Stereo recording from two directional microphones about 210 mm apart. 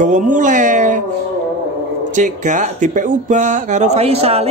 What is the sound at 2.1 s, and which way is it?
A man's voice, 35° right (ahead or behind).